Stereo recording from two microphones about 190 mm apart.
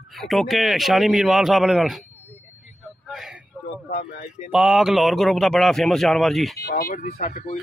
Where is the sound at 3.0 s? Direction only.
Centre (ahead or behind).